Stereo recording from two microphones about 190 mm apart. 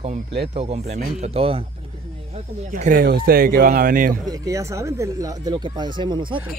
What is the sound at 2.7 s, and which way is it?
Speech, 45° right (ahead or behind).